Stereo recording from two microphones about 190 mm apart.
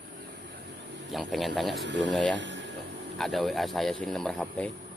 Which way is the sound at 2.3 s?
75° right (ahead or behind).